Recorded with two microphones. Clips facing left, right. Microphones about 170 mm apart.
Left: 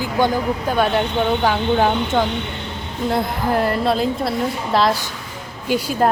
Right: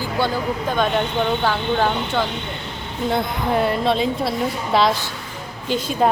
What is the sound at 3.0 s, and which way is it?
Speech, centre (ahead or behind).